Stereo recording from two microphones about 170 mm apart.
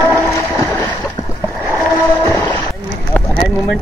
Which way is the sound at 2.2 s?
20° left (ahead or behind).